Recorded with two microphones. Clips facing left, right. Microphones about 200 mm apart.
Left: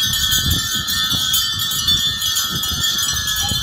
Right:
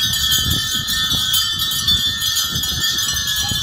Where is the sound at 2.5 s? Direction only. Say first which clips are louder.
Left 1 dB; 55° left (ahead or behind).